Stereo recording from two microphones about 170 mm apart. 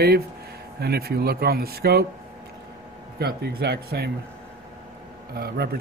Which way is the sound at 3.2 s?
70° right (ahead or behind).